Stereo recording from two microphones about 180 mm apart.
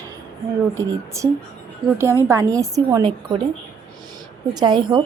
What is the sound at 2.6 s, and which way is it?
Speech, 20° right (ahead or behind).